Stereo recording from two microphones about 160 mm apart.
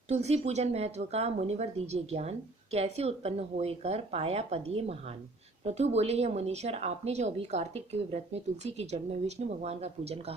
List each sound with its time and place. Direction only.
0.1 s a woman's voice: 45° right (ahead or behind)